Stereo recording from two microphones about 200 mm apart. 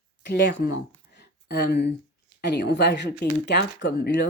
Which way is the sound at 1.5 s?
55° left (ahead or behind).